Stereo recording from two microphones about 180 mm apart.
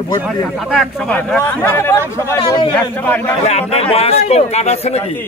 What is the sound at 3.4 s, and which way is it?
A man's voice, 35° left (ahead or behind).